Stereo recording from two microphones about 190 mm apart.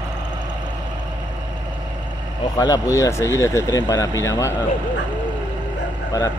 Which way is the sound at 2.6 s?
15° left (ahead or behind).